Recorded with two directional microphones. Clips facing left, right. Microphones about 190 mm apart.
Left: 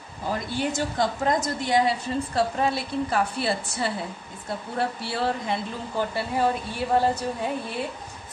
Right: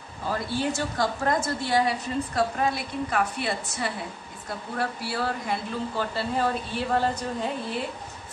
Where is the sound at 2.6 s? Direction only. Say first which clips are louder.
Left 2 dB; 30° left (ahead or behind).